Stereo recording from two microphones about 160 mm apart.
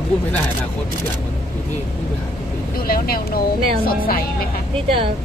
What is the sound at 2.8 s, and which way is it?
Speech, 70° left (ahead or behind).